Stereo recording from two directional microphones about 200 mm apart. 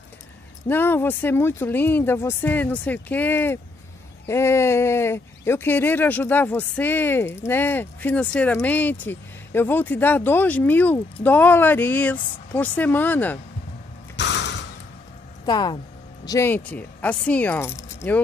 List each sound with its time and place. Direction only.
0.7 s speech: 10° left (ahead or behind)
14.1 s mechanisms: 60° left (ahead or behind)
15.4 s speech: 20° left (ahead or behind)